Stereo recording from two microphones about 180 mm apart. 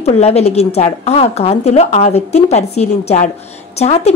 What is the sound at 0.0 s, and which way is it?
Speech, 35° left (ahead or behind).